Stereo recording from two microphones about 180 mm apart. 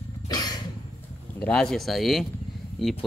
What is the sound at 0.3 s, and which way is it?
Cough, 20° left (ahead or behind).